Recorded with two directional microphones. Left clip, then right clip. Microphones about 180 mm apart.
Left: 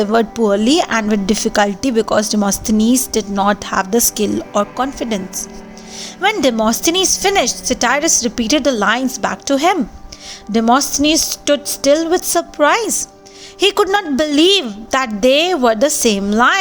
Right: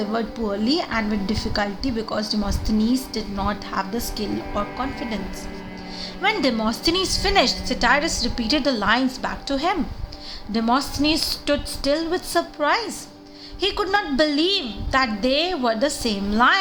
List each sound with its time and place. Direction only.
0.0 s a woman's voice: 55° left (ahead or behind)
6.3 s a woman's voice: 45° left (ahead or behind)